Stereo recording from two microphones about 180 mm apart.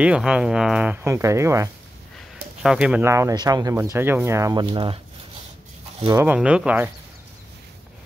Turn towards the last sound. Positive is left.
turn(degrees=-10)  # may be behind; listen again after turning